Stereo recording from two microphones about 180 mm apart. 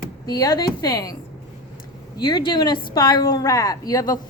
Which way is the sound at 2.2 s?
25° left (ahead or behind).